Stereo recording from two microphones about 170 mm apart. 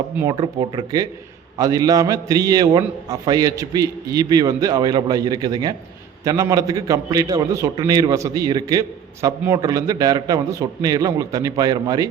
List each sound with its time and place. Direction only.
0.2 s a man's voice: 25° right (ahead or behind)